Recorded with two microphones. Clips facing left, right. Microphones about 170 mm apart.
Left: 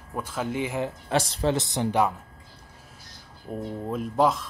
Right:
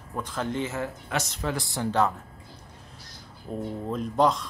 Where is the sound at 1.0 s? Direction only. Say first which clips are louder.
Left 6 dB; 30° left (ahead or behind); by 2.1 s 15° left (ahead or behind).